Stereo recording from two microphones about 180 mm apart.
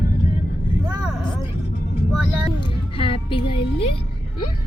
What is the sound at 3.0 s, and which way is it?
Speech, 30° left (ahead or behind).